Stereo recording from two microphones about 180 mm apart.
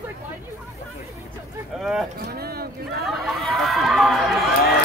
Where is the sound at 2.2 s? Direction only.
60° right (ahead or behind).